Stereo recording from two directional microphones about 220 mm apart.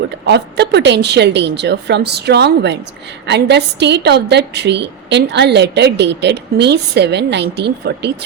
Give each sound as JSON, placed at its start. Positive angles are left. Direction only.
{"t": 0.3, "sound": "a woman's voice", "side_deg": -50}